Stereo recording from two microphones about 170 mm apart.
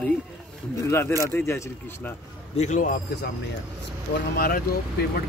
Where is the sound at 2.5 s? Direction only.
45° left (ahead or behind).